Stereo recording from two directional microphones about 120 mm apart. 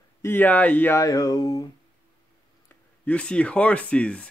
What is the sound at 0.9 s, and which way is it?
Music, 25° left (ahead or behind).